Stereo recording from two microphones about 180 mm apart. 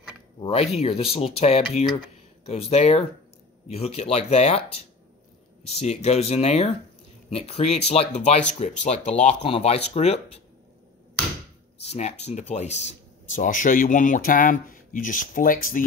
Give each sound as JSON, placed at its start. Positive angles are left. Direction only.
{"t": 0.4, "sound": "speech", "side_deg": 35}
{"t": 11.8, "sound": "speech", "side_deg": 35}